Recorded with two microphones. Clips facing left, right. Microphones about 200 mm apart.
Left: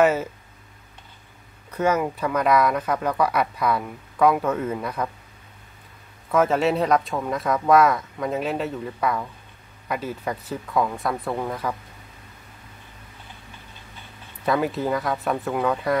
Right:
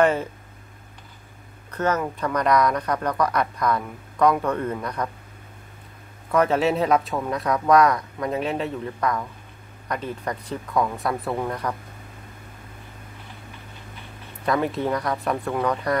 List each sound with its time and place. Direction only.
0.0 s speech: 5° left (ahead or behind)
1.7 s speech: 10° left (ahead or behind)
6.3 s speech: centre (ahead or behind)
14.4 s speech: 5° left (ahead or behind)